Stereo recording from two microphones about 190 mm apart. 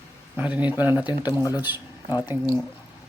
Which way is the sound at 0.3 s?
5° right (ahead or behind).